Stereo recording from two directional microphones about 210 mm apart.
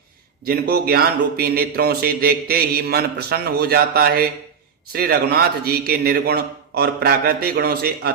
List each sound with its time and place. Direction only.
0.4 s a man's voice: 50° right (ahead or behind)